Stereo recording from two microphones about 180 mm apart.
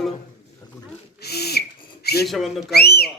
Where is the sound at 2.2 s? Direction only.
Centre (ahead or behind).